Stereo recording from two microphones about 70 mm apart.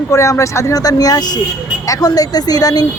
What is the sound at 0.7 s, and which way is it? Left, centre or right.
Speech, left.